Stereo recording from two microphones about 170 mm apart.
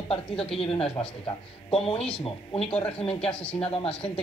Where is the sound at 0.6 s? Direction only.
35° left (ahead or behind).